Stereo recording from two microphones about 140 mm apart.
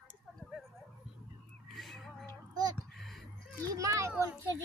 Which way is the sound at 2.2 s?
25° right (ahead or behind).